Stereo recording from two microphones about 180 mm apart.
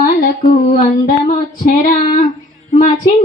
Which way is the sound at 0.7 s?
50° left (ahead or behind).